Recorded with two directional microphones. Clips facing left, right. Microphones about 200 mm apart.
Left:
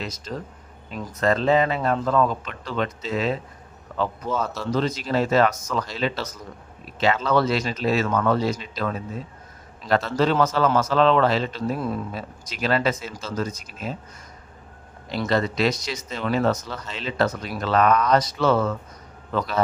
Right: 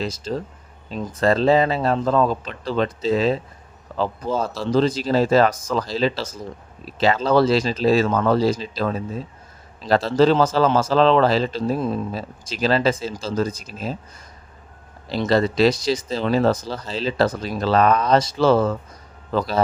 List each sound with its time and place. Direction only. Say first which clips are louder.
0.0 s speech: right 6 dB; 30° right (ahead or behind)
15.3 s speech: right 5 dB; 30° right (ahead or behind)